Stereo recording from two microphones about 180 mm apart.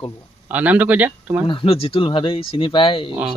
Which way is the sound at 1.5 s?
30° left (ahead or behind).